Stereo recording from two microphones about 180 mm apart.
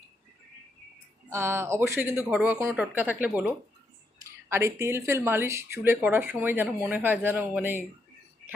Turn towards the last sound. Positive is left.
turn(degrees=-10)  # may be behind; listen again after turning